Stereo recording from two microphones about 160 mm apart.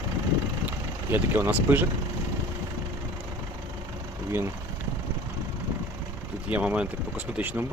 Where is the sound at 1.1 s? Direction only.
15° right (ahead or behind).